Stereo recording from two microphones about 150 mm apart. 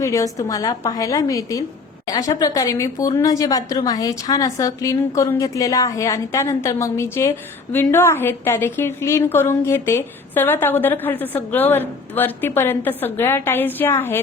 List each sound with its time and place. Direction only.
0.0 s a woman's voice: 20° left (ahead or behind)